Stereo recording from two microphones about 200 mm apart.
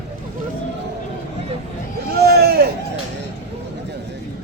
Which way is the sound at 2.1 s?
50° right (ahead or behind).